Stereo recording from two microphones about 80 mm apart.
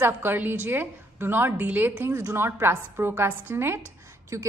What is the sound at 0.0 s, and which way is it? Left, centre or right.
A woman's voice, right.